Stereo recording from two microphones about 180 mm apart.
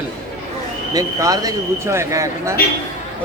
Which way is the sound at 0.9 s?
20° right (ahead or behind).